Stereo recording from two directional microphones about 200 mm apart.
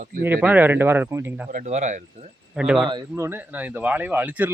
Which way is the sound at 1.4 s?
40° right (ahead or behind).